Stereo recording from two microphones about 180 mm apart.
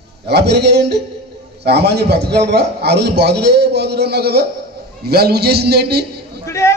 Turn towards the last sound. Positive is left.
turn(degrees=15)  # may be behind; listen again after turning